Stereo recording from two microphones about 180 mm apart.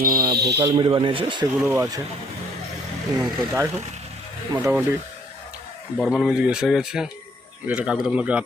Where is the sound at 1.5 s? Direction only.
15° right (ahead or behind).